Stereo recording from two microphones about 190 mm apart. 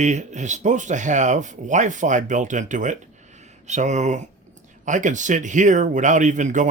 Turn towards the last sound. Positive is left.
turn(degrees=-40)  # may be behind; listen again after turning